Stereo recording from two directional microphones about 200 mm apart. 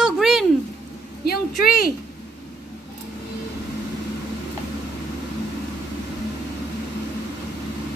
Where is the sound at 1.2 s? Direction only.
50° left (ahead or behind).